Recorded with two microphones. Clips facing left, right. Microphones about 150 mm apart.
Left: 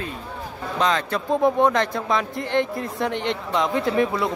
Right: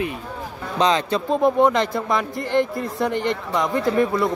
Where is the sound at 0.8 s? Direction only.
20° right (ahead or behind).